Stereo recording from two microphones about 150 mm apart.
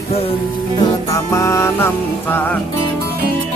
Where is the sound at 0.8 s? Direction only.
20° left (ahead or behind).